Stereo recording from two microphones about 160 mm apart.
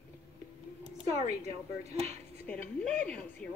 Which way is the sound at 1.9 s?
45° right (ahead or behind).